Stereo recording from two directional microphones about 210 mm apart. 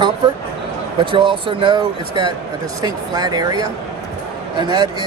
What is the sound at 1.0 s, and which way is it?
Speech, 25° right (ahead or behind).